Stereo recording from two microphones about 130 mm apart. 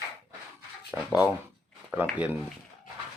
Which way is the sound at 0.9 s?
10° right (ahead or behind).